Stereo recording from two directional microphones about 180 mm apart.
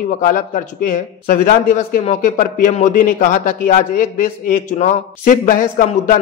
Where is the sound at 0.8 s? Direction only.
45° left (ahead or behind).